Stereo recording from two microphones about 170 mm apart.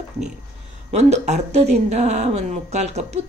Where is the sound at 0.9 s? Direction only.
40° right (ahead or behind).